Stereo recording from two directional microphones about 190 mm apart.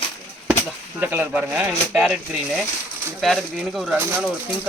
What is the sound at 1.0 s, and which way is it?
Speech, 10° right (ahead or behind).